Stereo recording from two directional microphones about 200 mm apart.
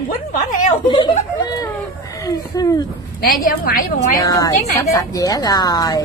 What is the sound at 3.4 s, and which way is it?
Speech, 45° left (ahead or behind).